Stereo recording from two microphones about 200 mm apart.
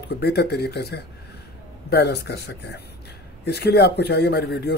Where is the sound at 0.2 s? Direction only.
55° left (ahead or behind).